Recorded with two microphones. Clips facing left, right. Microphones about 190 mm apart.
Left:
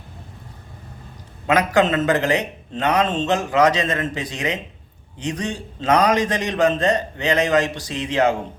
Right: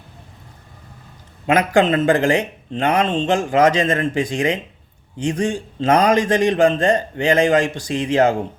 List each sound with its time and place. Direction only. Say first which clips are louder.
1.5 s speech: right 2 dB; 30° right (ahead or behind)